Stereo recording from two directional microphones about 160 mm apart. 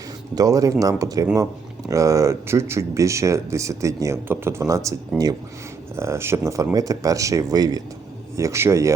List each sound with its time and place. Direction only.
0.3 s speech: 20° right (ahead or behind)